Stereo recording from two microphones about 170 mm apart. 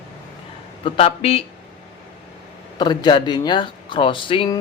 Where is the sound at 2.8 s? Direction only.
25° left (ahead or behind).